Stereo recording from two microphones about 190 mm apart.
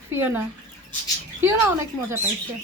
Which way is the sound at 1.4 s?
15° right (ahead or behind).